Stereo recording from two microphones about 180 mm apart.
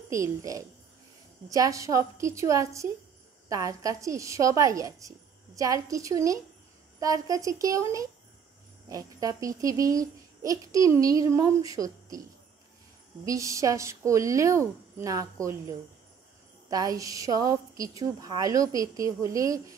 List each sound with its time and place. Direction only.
0.1 s a child's voice: 15° right (ahead or behind)
13.2 s speech: 20° right (ahead or behind)
16.7 s a child's voice: 20° right (ahead or behind)